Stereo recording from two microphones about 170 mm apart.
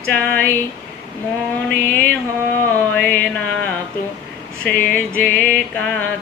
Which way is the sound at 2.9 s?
10° left (ahead or behind).